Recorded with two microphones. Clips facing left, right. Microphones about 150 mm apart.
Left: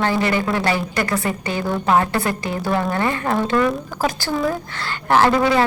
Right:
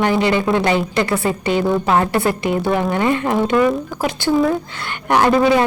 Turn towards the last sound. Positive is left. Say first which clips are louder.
# right 2 dB
turn(degrees=-15)  # may be behind; listen again after turning